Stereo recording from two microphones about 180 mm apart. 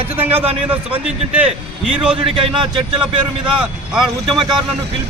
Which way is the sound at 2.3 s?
30° right (ahead or behind).